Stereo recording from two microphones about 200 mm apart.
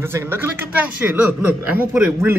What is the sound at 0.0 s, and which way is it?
A man's voice, 10° right (ahead or behind).